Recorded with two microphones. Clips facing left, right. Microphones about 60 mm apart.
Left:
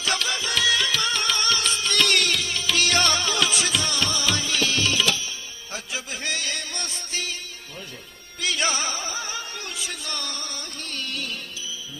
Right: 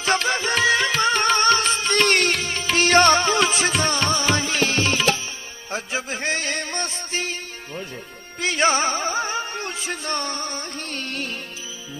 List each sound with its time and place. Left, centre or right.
0.0 s music: right
8.4 s music: right